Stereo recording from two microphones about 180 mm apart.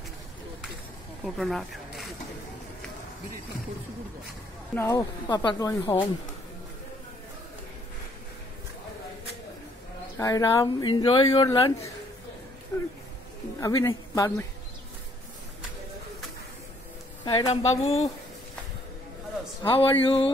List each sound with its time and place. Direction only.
1.2 s speech: centre (ahead or behind)
4.7 s a woman's voice: 10° left (ahead or behind)
5.3 s speech: 25° left (ahead or behind)
10.1 s speech: 20° left (ahead or behind)
13.6 s a woman's voice: 15° left (ahead or behind)
17.2 s a woman's voice: 30° left (ahead or behind)
19.6 s a woman's voice: 30° left (ahead or behind)